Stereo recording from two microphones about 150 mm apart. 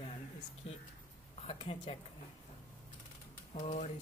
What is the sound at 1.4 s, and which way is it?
Speech, 35° left (ahead or behind).